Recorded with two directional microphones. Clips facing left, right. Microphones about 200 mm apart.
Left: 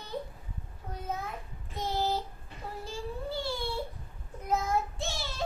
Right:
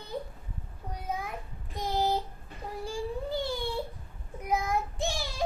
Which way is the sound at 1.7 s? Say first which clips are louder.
Right 2 dB; 15° right (ahead or behind).